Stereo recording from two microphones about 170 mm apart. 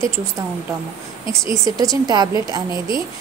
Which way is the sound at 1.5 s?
20° right (ahead or behind).